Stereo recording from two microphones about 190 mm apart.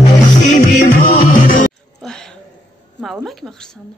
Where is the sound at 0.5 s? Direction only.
40° left (ahead or behind).